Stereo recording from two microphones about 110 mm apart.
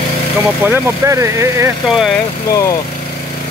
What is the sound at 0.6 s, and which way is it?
Speech, 20° right (ahead or behind).